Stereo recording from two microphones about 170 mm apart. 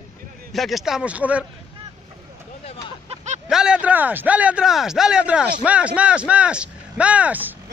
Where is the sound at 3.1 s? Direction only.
40° right (ahead or behind).